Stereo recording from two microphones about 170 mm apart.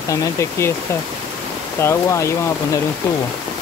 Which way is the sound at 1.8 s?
15° left (ahead or behind).